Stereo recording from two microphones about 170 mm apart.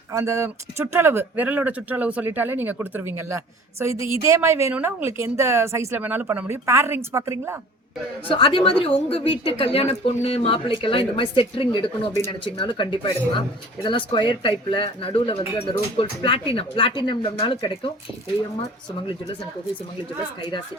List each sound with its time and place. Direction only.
0.1 s speech: 20° right (ahead or behind)
8.3 s a woman's voice: 30° left (ahead or behind)